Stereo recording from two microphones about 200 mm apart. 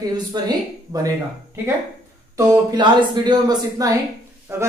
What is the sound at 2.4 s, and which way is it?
A woman's voice, 20° right (ahead or behind).